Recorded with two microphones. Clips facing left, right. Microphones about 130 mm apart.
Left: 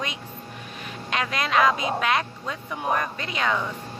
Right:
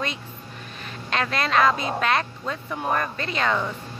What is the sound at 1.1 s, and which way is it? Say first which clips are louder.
Speech: right 1 dB; 10° left (ahead or behind).